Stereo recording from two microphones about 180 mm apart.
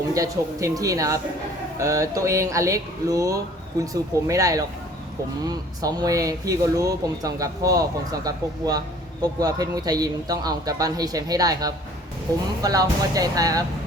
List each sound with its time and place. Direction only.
0.1 s speech: 20° right (ahead or behind)